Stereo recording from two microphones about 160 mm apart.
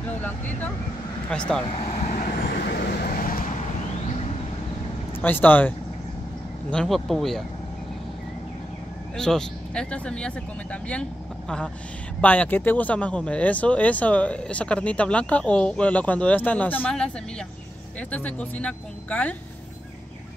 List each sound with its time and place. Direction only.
0.1 s speech: 10° left (ahead or behind)
2.0 s vehicle: 55° left (ahead or behind)
2.7 s vehicle: 70° left (ahead or behind)
5.2 s speech: 10° left (ahead or behind)
9.1 s speech: 5° left (ahead or behind)
18.1 s speech: 10° left (ahead or behind)